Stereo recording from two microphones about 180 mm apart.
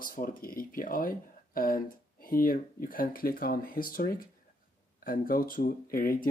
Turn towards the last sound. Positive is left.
turn(degrees=55)  # may be behind; listen again after turning